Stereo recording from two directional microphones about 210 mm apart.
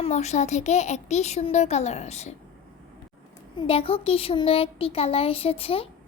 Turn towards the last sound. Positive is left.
turn(degrees=25)  # may be behind; listen again after turning